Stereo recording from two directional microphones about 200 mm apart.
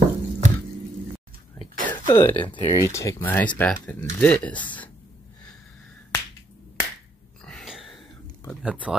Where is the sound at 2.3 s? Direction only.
25° left (ahead or behind); by 4.8 s 10° left (ahead or behind).